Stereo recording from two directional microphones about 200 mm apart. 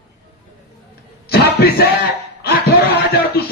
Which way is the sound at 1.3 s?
50° left (ahead or behind).